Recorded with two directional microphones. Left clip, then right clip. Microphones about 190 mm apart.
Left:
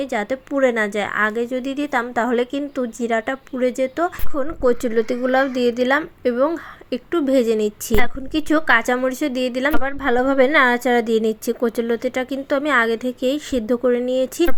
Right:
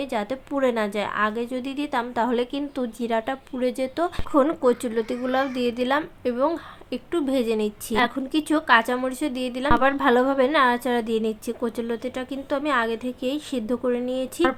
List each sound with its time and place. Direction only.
0.0 s a woman's voice: 15° left (ahead or behind)